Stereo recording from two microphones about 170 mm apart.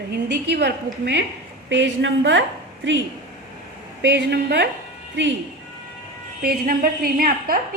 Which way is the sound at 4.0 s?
90° right.